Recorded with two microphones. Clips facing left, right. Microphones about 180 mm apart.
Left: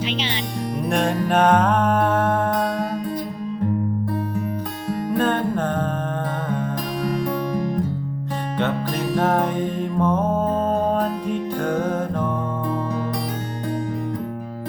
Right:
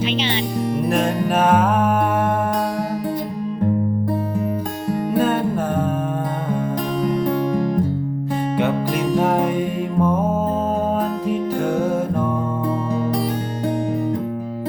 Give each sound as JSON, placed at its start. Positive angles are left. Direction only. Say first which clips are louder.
{"t": 0.9, "sound": "music", "louder": "left 2 dB", "side_deg": 0}
{"t": 5.1, "sound": "music", "louder": "right 1 dB", "side_deg": -5}
{"t": 7.0, "sound": "music", "louder": "right 4 dB", "side_deg": -25}
{"t": 8.5, "sound": "music", "louder": "right 1 dB", "side_deg": -10}